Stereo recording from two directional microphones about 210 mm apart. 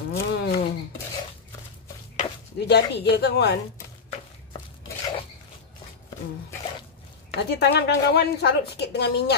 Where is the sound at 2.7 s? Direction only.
50° left (ahead or behind).